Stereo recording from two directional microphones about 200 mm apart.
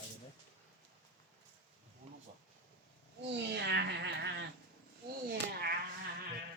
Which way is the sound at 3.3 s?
60° right (ahead or behind).